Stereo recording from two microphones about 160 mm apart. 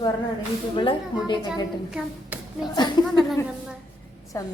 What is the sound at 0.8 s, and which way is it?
Speech, 30° left (ahead or behind).